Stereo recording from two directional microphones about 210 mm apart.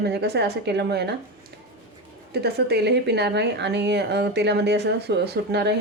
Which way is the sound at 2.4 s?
50° right (ahead or behind).